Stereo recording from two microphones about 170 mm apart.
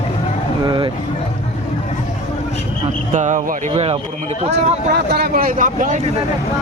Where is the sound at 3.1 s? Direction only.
45° right (ahead or behind).